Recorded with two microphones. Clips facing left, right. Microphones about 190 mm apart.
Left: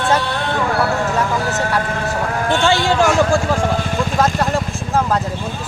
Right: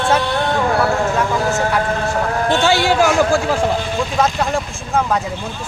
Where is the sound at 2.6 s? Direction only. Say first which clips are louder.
Even; 10° right (ahead or behind).